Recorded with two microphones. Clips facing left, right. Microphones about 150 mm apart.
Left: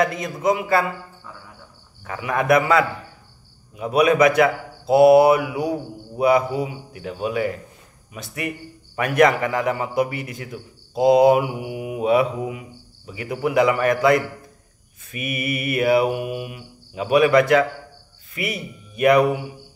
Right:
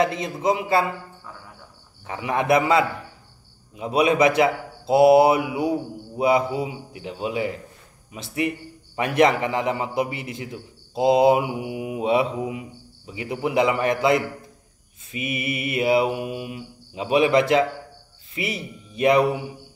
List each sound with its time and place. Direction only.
0.0 s a man's voice: 25° right (ahead or behind)
2.0 s a man's voice: 25° right (ahead or behind)